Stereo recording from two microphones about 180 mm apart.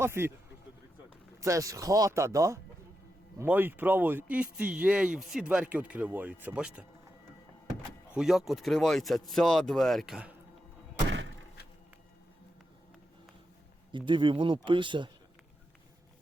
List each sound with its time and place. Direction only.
0.0 s speech: 15° right (ahead or behind)
1.4 s speech: 15° right (ahead or behind)
8.1 s speech: centre (ahead or behind)
13.9 s speech: 25° right (ahead or behind)